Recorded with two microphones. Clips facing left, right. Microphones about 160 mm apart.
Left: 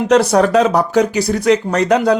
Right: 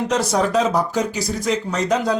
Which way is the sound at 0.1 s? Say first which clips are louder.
Left 9 dB; 65° left (ahead or behind).